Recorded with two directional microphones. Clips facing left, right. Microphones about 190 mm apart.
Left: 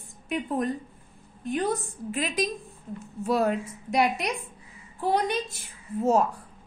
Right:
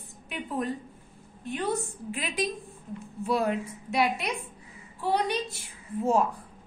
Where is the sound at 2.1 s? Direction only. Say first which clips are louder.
Left 3 dB; 40° left (ahead or behind).